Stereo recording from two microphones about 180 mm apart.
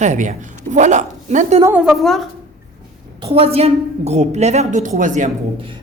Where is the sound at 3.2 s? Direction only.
30° right (ahead or behind).